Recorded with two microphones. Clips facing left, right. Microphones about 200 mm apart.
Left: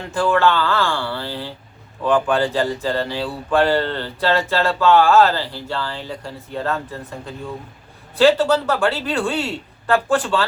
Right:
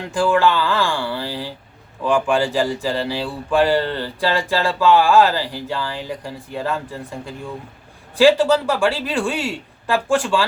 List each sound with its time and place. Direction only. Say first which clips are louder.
0.0 s speech: right 1 dB; 15° right (ahead or behind)
8.1 s speech: right 1 dB; 10° right (ahead or behind)